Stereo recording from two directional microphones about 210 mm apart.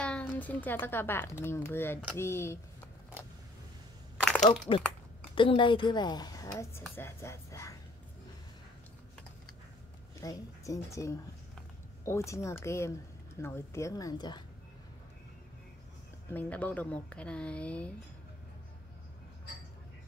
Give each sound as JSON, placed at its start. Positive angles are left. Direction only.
{"t": 0.0, "sound": "speech", "side_deg": 5}
{"t": 4.7, "sound": "speech", "side_deg": 25}
{"t": 10.2, "sound": "speech", "side_deg": 15}
{"t": 16.3, "sound": "speech", "side_deg": 5}